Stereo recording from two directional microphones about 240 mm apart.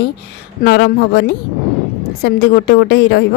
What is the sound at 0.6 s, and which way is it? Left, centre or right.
Speech, left.